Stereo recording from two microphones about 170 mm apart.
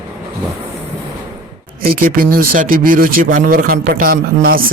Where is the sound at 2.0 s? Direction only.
60° right (ahead or behind).